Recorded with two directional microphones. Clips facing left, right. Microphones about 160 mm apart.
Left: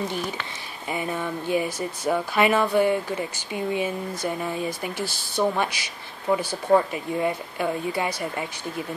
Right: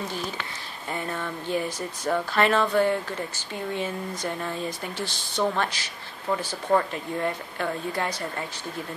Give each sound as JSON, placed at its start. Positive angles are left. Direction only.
{"t": 0.8, "sound": "speech", "side_deg": 10}